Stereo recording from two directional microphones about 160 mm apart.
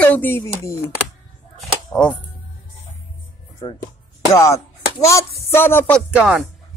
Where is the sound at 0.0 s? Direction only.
10° left (ahead or behind).